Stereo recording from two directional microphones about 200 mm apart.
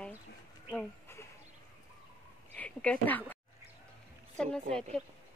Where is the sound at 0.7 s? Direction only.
10° left (ahead or behind).